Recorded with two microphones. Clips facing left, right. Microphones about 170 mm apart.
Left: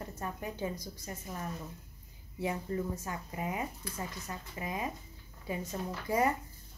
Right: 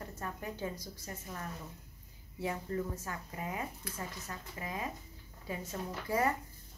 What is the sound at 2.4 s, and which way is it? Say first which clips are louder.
A woman's voice: left 2 dB; 15° left (ahead or behind).